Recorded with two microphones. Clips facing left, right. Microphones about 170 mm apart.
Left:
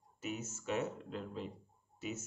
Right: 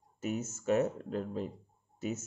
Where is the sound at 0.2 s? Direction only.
40° right (ahead or behind).